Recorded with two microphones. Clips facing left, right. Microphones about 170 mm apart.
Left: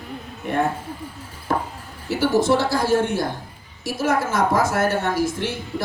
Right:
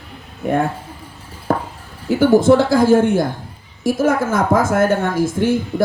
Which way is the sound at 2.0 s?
50° right (ahead or behind).